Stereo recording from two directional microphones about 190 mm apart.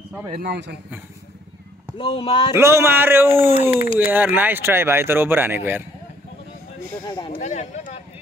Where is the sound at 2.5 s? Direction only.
15° right (ahead or behind).